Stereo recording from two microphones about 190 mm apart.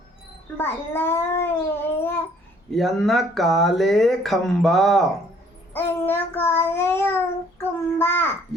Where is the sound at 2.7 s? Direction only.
Centre (ahead or behind).